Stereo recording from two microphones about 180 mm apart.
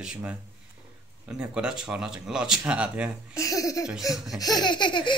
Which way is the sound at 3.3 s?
20° left (ahead or behind).